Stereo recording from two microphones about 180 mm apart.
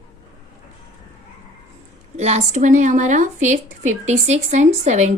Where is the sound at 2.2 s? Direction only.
35° right (ahead or behind).